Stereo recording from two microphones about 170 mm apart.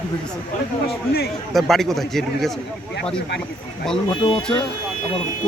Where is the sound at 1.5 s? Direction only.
Centre (ahead or behind).